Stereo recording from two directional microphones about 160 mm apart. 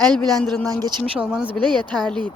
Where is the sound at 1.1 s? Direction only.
5° right (ahead or behind).